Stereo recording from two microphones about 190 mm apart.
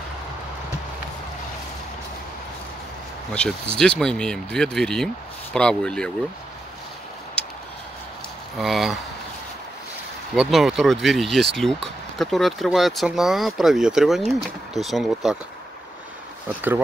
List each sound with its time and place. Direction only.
3.3 s speech: 5° left (ahead or behind)
8.5 s speech: centre (ahead or behind)
10.3 s speech: 5° right (ahead or behind)